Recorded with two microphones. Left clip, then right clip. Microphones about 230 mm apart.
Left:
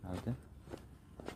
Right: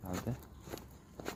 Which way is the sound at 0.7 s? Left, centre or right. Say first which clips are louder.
Right 3 dB; right.